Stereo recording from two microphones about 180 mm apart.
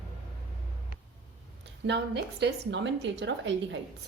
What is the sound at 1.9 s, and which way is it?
A woman's voice, 70° right (ahead or behind).